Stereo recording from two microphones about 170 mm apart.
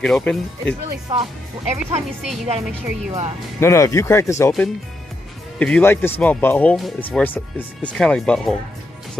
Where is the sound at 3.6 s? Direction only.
15° left (ahead or behind).